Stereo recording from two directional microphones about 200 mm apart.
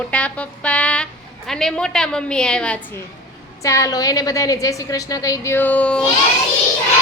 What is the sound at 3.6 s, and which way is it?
A woman's voice, 15° left (ahead or behind).